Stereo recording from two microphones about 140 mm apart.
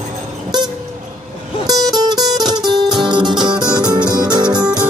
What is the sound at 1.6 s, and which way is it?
Music, 30° right (ahead or behind).